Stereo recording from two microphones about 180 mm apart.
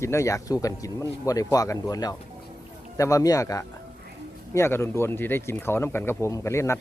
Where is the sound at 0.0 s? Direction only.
15° left (ahead or behind).